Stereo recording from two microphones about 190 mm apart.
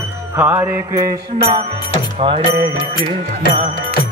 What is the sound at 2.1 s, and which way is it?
Music, 30° right (ahead or behind).